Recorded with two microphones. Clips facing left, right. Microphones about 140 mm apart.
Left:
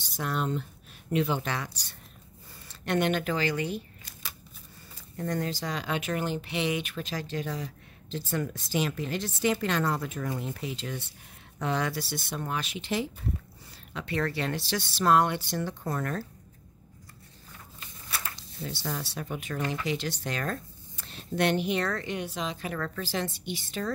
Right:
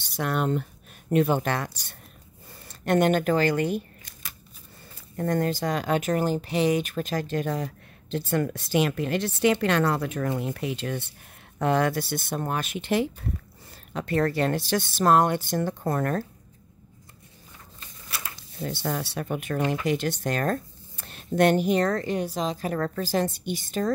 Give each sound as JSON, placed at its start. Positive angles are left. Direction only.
{"t": 0.0, "sound": "speech", "side_deg": -65}
{"t": 5.1, "sound": "speech", "side_deg": -50}
{"t": 13.9, "sound": "speech", "side_deg": -45}
{"t": 18.6, "sound": "speech", "side_deg": -55}